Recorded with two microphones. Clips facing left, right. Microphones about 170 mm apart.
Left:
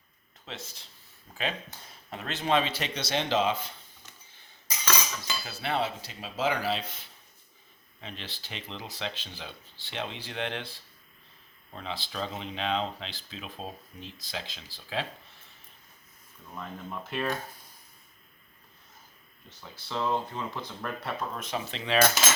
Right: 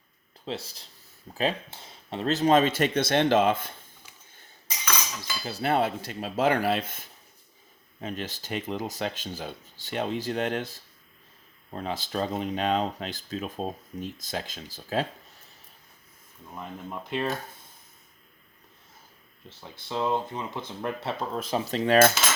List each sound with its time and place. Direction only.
0.4 s speech: 35° right (ahead or behind); by 3.7 s 50° right (ahead or behind)
4.0 s a sound: 10° right (ahead or behind)
5.5 s speech: 40° right (ahead or behind)
16.6 s speech: 15° right (ahead or behind)
19.5 s speech: 20° right (ahead or behind); by 22.1 s 45° right (ahead or behind)